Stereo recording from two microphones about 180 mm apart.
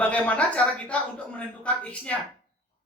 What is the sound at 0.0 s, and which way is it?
A man's voice, 10° left (ahead or behind).